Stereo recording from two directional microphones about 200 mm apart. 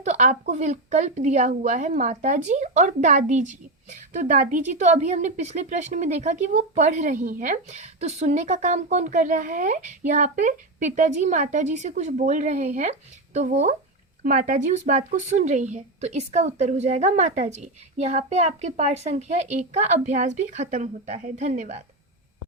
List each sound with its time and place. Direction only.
0.0 s speech: 35° right (ahead or behind)